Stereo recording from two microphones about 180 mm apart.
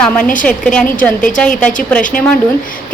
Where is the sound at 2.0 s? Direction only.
45° left (ahead or behind).